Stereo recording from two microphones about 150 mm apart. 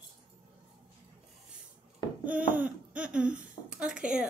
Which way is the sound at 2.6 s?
10° right (ahead or behind).